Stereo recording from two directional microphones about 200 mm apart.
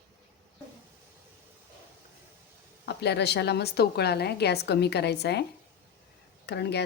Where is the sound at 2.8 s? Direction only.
55° left (ahead or behind).